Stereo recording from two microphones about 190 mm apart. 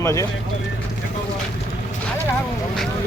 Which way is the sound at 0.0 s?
15° left (ahead or behind).